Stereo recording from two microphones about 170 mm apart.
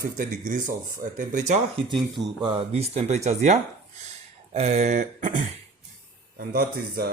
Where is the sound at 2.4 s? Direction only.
30° right (ahead or behind); by 5.4 s 50° right (ahead or behind).